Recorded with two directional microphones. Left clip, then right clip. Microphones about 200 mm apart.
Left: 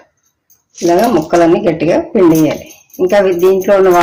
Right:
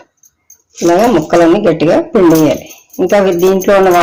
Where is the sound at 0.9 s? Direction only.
25° right (ahead or behind).